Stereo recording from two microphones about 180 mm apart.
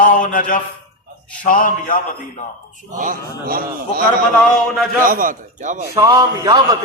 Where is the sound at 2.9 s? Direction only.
50° right (ahead or behind).